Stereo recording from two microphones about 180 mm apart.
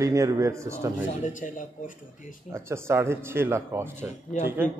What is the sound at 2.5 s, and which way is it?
A man's voice, 15° right (ahead or behind).